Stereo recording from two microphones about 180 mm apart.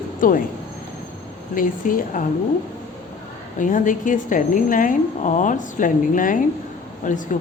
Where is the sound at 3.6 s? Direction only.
45° left (ahead or behind).